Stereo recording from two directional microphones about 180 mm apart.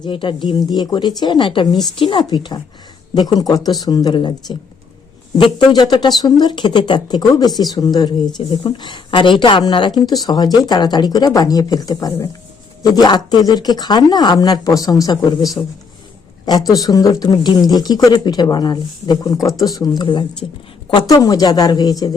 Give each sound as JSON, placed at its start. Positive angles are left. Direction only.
{"t": 0.0, "sound": "speech", "side_deg": 30}
{"t": 5.4, "sound": "speech", "side_deg": 30}